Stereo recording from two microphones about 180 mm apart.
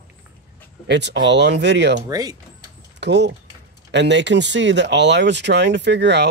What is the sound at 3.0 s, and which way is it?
Speech, 70° right (ahead or behind).